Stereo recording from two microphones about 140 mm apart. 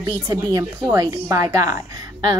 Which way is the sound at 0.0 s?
25° right (ahead or behind).